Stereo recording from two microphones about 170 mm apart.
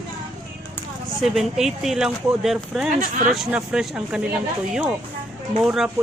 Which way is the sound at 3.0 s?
55° right (ahead or behind).